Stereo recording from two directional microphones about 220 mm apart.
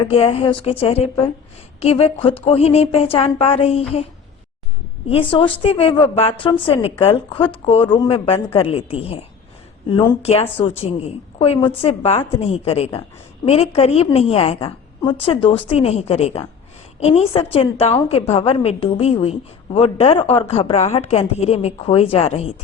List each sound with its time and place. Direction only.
0.1 s a woman's voice: 25° left (ahead or behind)
5.0 s a woman's voice: 25° left (ahead or behind)